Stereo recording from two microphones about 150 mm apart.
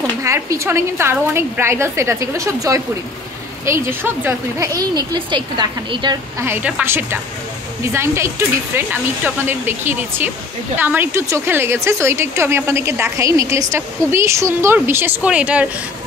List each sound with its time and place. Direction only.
0.2 s a woman's voice: 20° right (ahead or behind)
6.4 s speech: 15° right (ahead or behind)